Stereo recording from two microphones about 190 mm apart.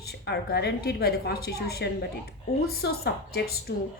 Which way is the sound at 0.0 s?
55° left (ahead or behind).